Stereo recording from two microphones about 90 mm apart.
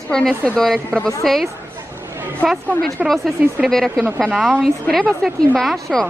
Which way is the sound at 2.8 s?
Centre (ahead or behind).